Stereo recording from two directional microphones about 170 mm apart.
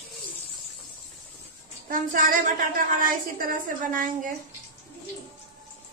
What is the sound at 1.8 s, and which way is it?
A woman's voice, 55° right (ahead or behind).